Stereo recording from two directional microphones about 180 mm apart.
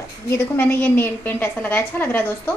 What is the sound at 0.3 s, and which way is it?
A woman's voice, 15° left (ahead or behind).